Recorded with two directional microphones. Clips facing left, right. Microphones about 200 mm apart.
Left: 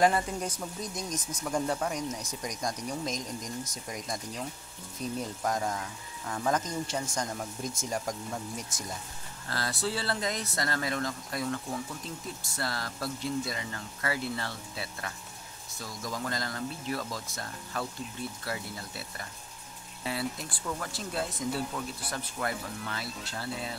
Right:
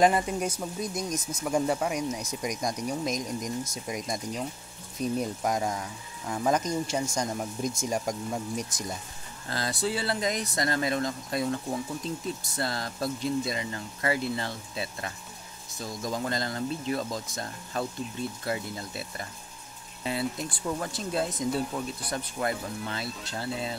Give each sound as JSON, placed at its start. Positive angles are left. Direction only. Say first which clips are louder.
{"t": 0.0, "sound": "speech", "louder": "right 3 dB", "side_deg": -15}